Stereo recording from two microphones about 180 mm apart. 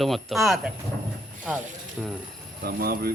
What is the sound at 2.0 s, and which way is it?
Speech, 5° right (ahead or behind).